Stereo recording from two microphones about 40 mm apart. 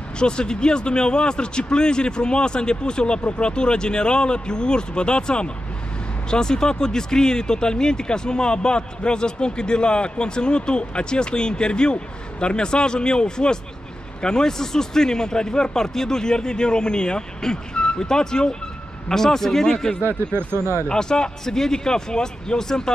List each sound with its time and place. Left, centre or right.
0.2 s speech: left